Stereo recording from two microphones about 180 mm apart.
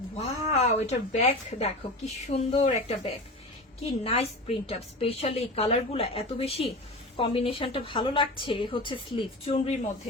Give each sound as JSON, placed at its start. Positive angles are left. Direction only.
{"t": 0.2, "sound": "a woman's voice", "side_deg": 35}